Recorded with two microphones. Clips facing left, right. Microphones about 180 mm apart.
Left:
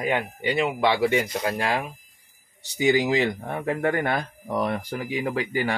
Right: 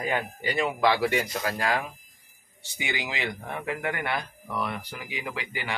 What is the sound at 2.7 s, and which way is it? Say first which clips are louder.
Speech: left 12 dB; 40° left (ahead or behind).